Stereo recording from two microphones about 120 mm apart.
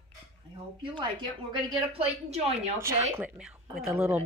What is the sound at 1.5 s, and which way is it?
A woman's voice, 55° right (ahead or behind).